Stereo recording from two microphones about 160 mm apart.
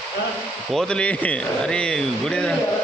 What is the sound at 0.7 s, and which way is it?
Speech, 5° left (ahead or behind).